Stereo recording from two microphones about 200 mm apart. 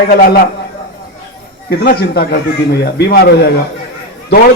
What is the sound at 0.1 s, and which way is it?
Speech, 45° left (ahead or behind).